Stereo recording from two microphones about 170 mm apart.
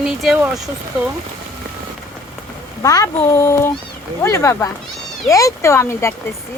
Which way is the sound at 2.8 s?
20° left (ahead or behind).